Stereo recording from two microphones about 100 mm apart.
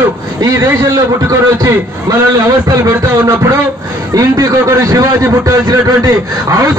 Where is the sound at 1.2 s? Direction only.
30° right (ahead or behind).